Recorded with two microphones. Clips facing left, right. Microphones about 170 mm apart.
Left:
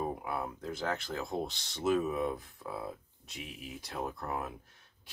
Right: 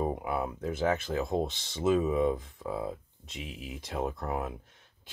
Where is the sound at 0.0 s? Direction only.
20° right (ahead or behind).